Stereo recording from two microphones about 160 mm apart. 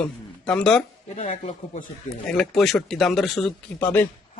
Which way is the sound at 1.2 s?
50° left (ahead or behind).